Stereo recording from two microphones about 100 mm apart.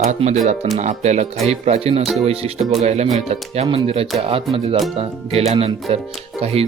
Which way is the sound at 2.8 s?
90° right.